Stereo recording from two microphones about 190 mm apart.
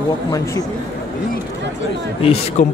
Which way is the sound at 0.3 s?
20° left (ahead or behind).